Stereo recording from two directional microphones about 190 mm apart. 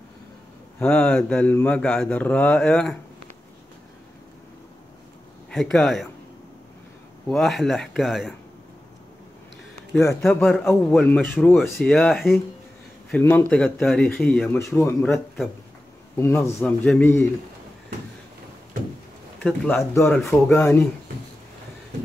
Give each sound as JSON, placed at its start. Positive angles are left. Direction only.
{"t": 0.7, "sound": "speech", "side_deg": 10}
{"t": 5.5, "sound": "speech", "side_deg": 0}
{"t": 7.2, "sound": "speech", "side_deg": 0}
{"t": 10.2, "sound": "speech", "side_deg": 5}
{"t": 13.1, "sound": "speech", "side_deg": 10}
{"t": 14.6, "sound": "speech", "side_deg": 15}
{"t": 16.2, "sound": "speech", "side_deg": 15}
{"t": 19.4, "sound": "speech", "side_deg": 5}